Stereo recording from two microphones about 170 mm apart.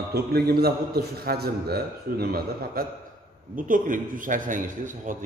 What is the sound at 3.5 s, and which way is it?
A man's voice, 50° right (ahead or behind).